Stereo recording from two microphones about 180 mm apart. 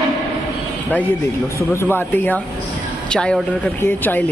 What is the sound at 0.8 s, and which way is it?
A woman's voice, 10° left (ahead or behind).